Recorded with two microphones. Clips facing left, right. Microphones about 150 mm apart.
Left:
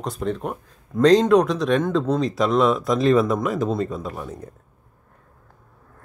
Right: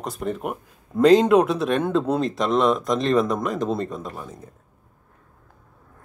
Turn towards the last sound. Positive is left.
turn(degrees=0)  # may be behind; listen again after turning